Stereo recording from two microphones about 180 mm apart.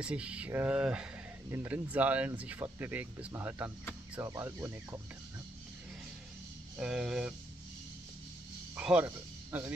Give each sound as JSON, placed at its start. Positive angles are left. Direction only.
{"t": 0.0, "sound": "speech", "side_deg": -5}
{"t": 6.8, "sound": "speech", "side_deg": -5}
{"t": 8.7, "sound": "music", "side_deg": -10}